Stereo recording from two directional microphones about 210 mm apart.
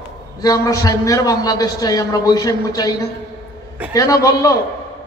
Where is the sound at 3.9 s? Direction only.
15° left (ahead or behind).